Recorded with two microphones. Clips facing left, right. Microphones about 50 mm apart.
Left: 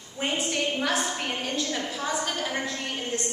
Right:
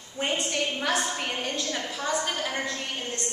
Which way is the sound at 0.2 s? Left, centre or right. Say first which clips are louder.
Even; centre.